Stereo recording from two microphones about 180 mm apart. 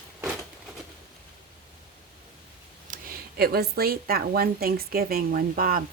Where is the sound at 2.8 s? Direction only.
55° right (ahead or behind).